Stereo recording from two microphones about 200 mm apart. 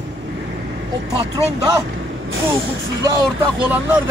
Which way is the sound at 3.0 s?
20° right (ahead or behind).